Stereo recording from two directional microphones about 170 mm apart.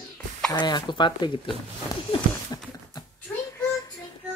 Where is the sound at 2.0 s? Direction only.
25° left (ahead or behind).